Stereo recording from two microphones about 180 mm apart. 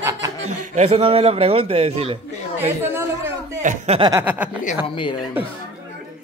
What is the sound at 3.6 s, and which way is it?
Chuckle, 45° right (ahead or behind).